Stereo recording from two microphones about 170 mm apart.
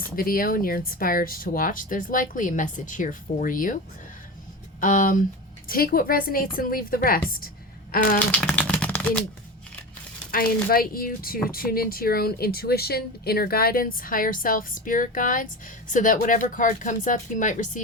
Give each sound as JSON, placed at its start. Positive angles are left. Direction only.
{"t": 0.2, "sound": "speech", "side_deg": 55}
{"t": 4.8, "sound": "speech", "side_deg": 50}
{"t": 8.3, "sound": "a sound", "side_deg": 5}
{"t": 10.3, "sound": "speech", "side_deg": 60}